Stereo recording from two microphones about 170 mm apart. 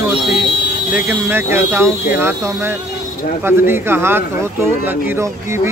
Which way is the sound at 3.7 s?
15° right (ahead or behind).